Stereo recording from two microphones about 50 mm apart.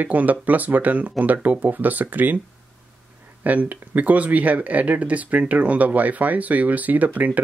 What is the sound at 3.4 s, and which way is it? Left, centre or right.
Speech, right.